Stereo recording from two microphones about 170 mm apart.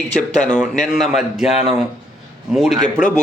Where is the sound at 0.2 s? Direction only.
Centre (ahead or behind).